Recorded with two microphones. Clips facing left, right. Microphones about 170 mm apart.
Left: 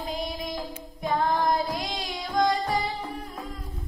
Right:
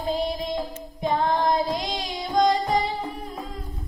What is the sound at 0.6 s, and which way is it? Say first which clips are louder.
Child singing: right 5 dB; 20° right (ahead or behind).